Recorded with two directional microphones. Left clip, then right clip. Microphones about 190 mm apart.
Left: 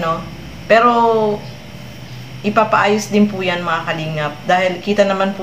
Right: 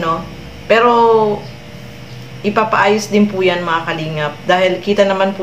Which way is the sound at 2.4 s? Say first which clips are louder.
Right 1 dB; 5° right (ahead or behind).